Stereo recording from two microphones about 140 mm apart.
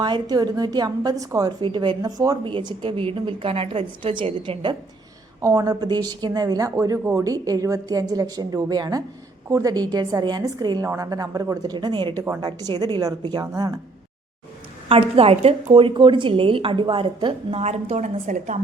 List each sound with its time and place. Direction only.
0.0 s a woman's voice: 30° right (ahead or behind)
5.4 s speech: 25° right (ahead or behind)
14.8 s a woman's voice: 40° right (ahead or behind); by 18.6 s 65° right (ahead or behind)